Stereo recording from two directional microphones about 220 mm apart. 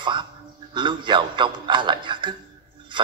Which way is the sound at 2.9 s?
20° right (ahead or behind).